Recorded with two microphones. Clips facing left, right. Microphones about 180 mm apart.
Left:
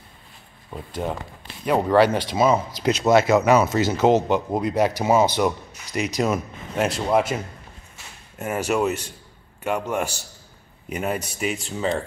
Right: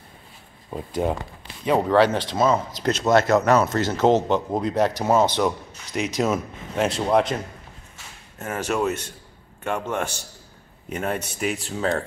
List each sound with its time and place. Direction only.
1.0 s speech: 10° right (ahead or behind)
1.7 s speech: 5° left (ahead or behind)